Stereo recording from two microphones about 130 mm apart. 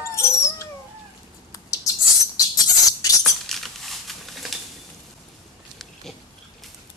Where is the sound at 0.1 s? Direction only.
20° left (ahead or behind).